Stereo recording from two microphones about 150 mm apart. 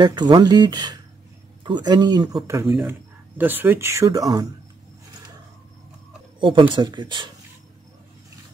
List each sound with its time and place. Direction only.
0.0 s speech: 30° right (ahead or behind)
2.6 s speech: 10° right (ahead or behind)
6.4 s speech: 35° right (ahead or behind)